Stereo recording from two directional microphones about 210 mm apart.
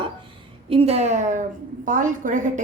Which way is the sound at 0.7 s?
30° right (ahead or behind).